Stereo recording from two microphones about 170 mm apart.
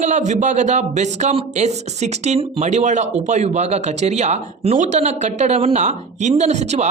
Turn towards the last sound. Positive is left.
turn(degrees=-40)  # may be behind; listen again after turning